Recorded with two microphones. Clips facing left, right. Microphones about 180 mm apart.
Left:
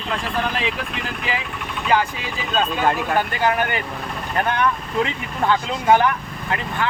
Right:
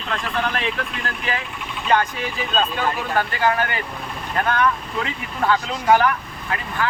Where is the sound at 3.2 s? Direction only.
20° left (ahead or behind).